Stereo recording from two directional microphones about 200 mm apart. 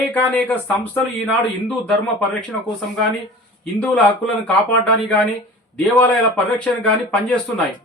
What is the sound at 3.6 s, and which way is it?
Speech, 5° left (ahead or behind).